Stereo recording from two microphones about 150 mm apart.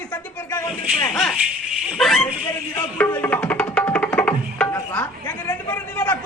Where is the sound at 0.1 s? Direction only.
15° left (ahead or behind).